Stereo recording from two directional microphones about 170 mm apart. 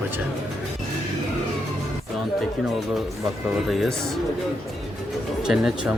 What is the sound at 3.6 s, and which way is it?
Speech, centre (ahead or behind).